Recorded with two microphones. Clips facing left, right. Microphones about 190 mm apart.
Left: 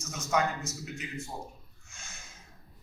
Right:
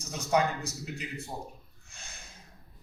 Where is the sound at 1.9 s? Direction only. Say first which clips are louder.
Right 1 dB; 35° right (ahead or behind).